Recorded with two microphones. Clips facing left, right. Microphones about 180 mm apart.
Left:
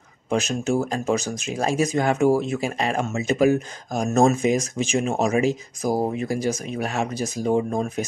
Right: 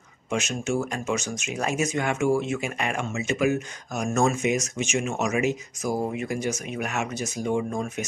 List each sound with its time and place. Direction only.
0.3 s speech: 35° left (ahead or behind)